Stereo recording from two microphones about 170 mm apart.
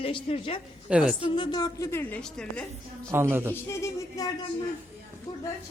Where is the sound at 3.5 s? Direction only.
15° left (ahead or behind).